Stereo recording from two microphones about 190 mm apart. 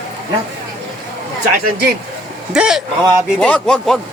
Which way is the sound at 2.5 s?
5° right (ahead or behind).